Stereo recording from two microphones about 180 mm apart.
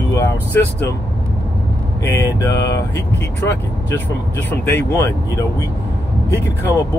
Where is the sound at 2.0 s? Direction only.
15° left (ahead or behind).